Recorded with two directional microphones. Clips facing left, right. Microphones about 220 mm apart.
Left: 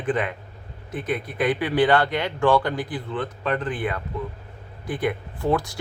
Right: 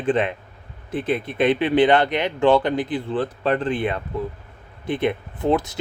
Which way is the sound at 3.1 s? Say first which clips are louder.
Right 4 dB; 30° right (ahead or behind).